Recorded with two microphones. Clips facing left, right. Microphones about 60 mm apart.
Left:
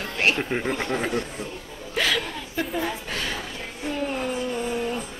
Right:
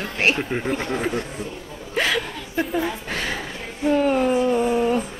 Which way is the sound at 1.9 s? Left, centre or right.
Right.